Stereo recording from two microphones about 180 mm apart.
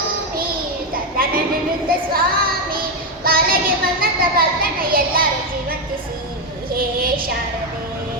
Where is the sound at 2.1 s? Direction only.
55° right (ahead or behind).